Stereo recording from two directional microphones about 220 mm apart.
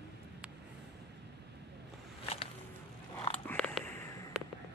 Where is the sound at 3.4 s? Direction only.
5° left (ahead or behind).